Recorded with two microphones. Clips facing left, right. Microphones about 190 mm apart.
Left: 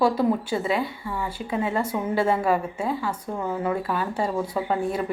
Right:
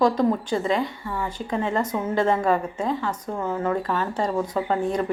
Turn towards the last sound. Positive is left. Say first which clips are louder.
# right 2 dB
turn(degrees=5)  # may be behind; listen again after turning